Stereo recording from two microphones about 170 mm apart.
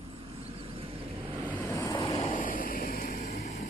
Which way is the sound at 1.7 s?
20° left (ahead or behind).